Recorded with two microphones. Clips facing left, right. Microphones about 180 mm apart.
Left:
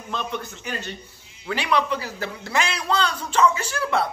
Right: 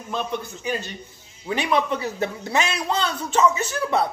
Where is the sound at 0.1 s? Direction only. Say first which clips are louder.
Right 2 dB; 10° right (ahead or behind).